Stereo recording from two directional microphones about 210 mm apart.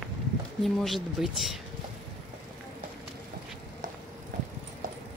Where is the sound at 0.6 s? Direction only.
Centre (ahead or behind).